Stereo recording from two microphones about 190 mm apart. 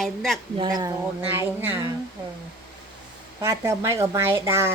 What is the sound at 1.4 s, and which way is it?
Speech, 10° right (ahead or behind).